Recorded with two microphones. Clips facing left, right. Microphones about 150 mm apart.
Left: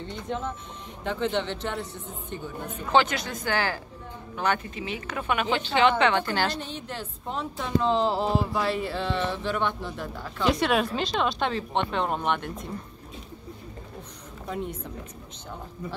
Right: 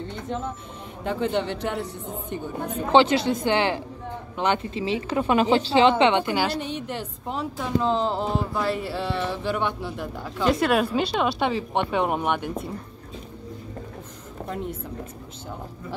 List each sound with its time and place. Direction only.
1.0 s speech: 5° right (ahead or behind)
2.9 s a woman's voice: 25° right (ahead or behind); by 12.5 s 10° right (ahead or behind)